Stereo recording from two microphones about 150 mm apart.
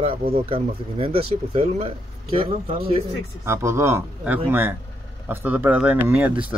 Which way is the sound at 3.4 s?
15° right (ahead or behind).